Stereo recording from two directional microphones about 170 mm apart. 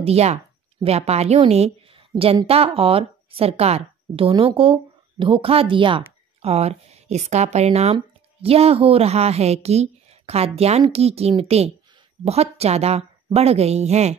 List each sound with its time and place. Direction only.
0.0 s a woman's voice: 35° right (ahead or behind)